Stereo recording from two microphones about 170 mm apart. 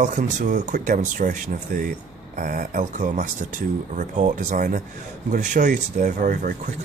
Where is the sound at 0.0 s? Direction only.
50° right (ahead or behind).